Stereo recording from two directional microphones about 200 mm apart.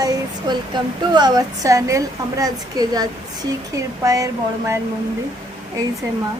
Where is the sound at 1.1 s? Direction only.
20° right (ahead or behind).